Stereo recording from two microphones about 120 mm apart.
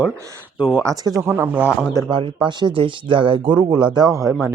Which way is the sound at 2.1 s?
40° right (ahead or behind).